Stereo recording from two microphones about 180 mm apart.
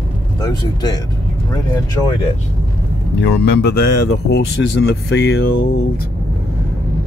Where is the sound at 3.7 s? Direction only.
65° left (ahead or behind).